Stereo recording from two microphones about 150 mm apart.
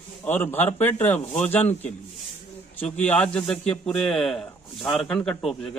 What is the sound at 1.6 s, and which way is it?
Speech, 45° left (ahead or behind).